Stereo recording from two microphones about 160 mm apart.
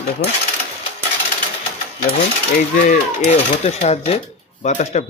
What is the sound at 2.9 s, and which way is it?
Speech, 45° left (ahead or behind).